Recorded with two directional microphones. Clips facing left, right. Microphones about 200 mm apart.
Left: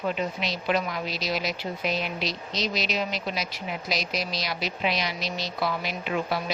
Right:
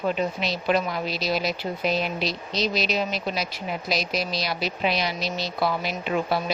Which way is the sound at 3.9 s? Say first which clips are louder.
Right 3 dB; 30° right (ahead or behind).